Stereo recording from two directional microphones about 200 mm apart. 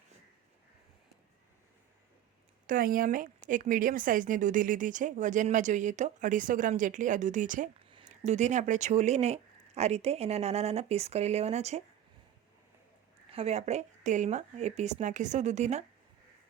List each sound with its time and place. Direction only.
2.6 s a woman's voice: 45° right (ahead or behind)
7.9 s a woman's voice: 30° right (ahead or behind)
13.3 s a woman's voice: 30° right (ahead or behind)